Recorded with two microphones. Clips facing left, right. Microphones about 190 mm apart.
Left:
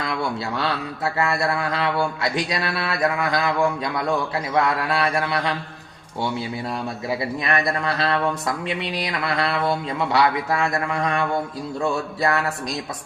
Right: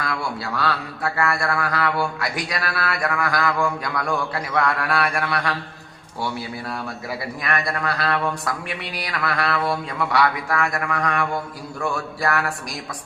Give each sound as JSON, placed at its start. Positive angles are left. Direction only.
{"t": 0.0, "sound": "speech", "side_deg": 20}